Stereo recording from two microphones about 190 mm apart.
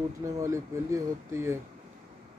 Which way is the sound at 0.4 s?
15° right (ahead or behind).